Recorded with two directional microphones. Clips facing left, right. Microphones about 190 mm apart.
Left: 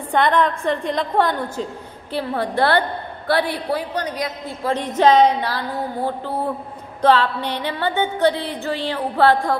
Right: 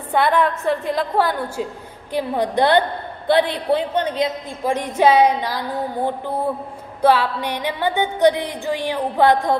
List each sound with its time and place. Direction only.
0.1 s music: 5° right (ahead or behind)
3.3 s a woman's voice: 20° right (ahead or behind)
4.6 s music: 10° right (ahead or behind)
7.0 s music: 10° right (ahead or behind)